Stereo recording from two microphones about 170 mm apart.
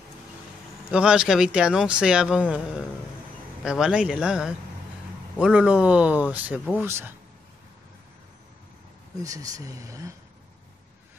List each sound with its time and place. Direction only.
0.9 s speech: 5° right (ahead or behind)
9.2 s speech: 20° right (ahead or behind)